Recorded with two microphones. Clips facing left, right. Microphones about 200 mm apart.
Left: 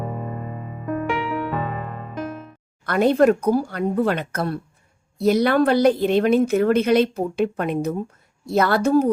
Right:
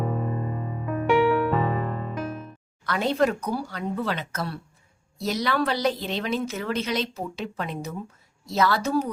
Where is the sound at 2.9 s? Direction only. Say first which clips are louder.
Left 7 dB; 50° left (ahead or behind).